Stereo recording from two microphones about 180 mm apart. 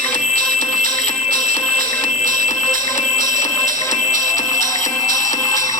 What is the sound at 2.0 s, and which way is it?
Music, 40° left (ahead or behind).